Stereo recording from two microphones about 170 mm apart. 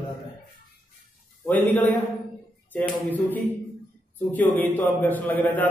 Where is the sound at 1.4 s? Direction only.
15° left (ahead or behind).